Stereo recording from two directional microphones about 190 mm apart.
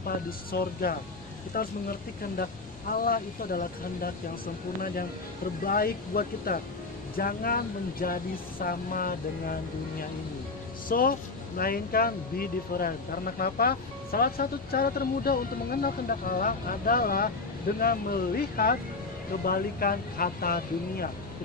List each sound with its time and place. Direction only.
0.0 s speech: 50° left (ahead or behind)
2.9 s speech: 50° left (ahead or behind)
5.6 s speech: 50° left (ahead or behind)
10.8 s speech: 50° left (ahead or behind)